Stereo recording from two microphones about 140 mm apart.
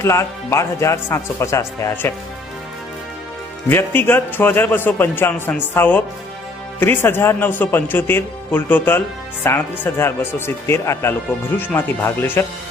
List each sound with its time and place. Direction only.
0.0 s speech: 20° left (ahead or behind)
3.7 s a man's voice: 15° left (ahead or behind)